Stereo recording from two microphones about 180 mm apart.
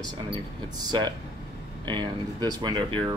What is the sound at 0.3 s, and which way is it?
Speech, 25° right (ahead or behind).